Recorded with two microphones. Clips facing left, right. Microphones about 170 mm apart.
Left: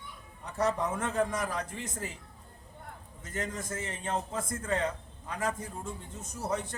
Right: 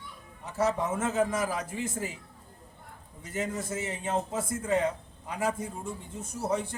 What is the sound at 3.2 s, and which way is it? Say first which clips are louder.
A man's voice: right 4 dB; 10° right (ahead or behind).